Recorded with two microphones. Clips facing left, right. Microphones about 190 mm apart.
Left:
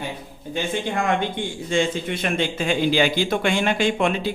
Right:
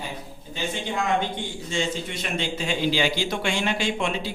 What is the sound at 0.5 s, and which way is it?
A man's voice, 55° left (ahead or behind).